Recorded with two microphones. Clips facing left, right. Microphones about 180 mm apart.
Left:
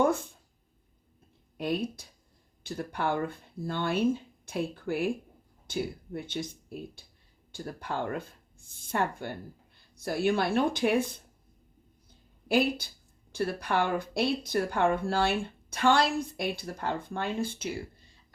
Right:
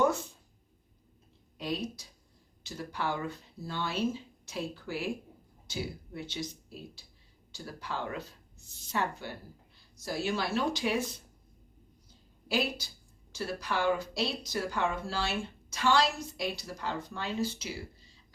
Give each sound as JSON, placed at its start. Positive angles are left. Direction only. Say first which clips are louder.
{"t": 0.0, "sound": "speech", "louder": "left 2 dB", "side_deg": 55}
{"t": 1.5, "sound": "speech", "louder": "left 4 dB", "side_deg": 55}
{"t": 12.5, "sound": "speech", "louder": "left 6 dB", "side_deg": 55}